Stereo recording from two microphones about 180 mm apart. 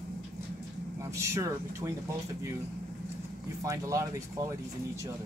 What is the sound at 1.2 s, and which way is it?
Speech, 15° right (ahead or behind).